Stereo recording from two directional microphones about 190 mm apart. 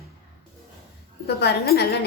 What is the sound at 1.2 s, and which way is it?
Speech, 55° left (ahead or behind).